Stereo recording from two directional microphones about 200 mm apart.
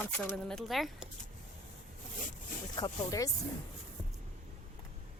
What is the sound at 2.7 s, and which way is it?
Speech, 20° left (ahead or behind).